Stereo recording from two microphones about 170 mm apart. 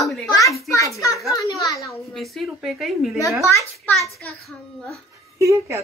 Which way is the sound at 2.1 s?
Centre (ahead or behind).